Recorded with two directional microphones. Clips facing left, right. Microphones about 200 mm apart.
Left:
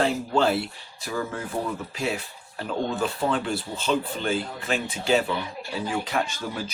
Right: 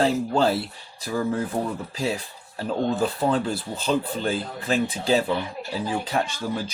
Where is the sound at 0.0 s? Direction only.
35° right (ahead or behind).